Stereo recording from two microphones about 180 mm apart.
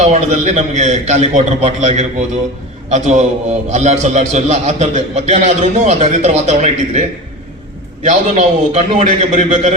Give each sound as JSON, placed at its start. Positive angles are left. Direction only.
{"t": 0.0, "sound": "a man's voice", "side_deg": -40}
{"t": 8.0, "sound": "a man's voice", "side_deg": -40}